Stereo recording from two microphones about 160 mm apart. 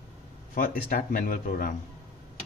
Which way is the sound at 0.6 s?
60° left (ahead or behind).